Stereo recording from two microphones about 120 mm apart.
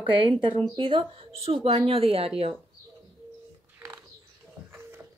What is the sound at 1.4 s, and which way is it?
Speech, 55° right (ahead or behind).